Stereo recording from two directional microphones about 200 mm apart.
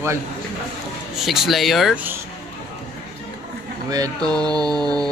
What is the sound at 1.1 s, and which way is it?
Speech, centre (ahead or behind).